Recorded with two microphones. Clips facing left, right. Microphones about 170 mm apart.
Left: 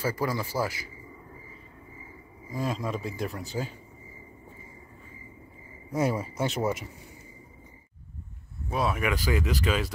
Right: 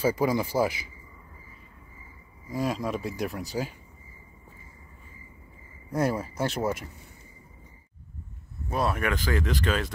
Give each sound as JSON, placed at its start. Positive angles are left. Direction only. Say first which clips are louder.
{"t": 0.0, "sound": "a man's voice", "louder": "right 5 dB", "side_deg": -15}
{"t": 2.5, "sound": "speech", "louder": "right 2 dB", "side_deg": 0}
{"t": 5.9, "sound": "a man's voice", "louder": "even", "side_deg": 5}
{"t": 6.3, "sound": "speech", "louder": "even", "side_deg": -5}
{"t": 8.6, "sound": "speech", "louder": "even", "side_deg": 5}